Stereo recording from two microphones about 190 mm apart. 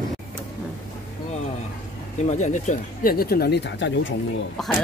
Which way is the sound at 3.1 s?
55° left (ahead or behind).